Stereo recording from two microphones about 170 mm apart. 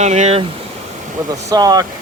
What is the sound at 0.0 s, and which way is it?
Speech, 40° right (ahead or behind).